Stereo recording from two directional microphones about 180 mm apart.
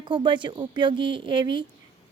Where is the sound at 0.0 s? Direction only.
25° right (ahead or behind).